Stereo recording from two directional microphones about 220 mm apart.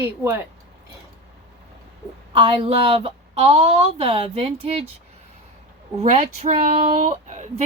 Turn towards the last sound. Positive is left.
turn(degrees=-35)  # may be behind; listen again after turning